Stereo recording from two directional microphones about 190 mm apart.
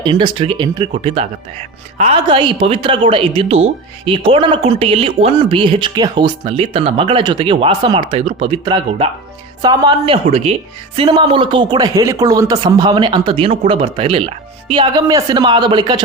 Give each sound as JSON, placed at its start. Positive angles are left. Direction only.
{"t": 0.0, "sound": "speech", "side_deg": -25}
{"t": 10.2, "sound": "speech", "side_deg": -35}